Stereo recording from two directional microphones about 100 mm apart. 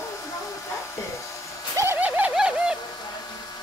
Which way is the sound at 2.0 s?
15° right (ahead or behind).